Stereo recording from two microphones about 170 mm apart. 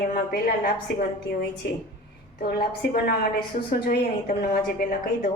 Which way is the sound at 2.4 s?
60° left (ahead or behind).